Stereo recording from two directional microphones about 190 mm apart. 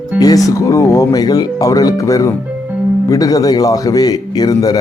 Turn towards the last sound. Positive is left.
turn(degrees=20)  # may be behind; listen again after turning